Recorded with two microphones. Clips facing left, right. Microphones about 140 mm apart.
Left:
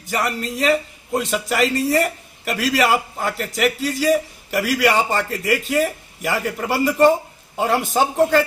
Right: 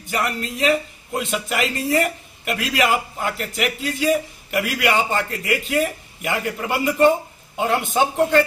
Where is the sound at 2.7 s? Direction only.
40° left (ahead or behind).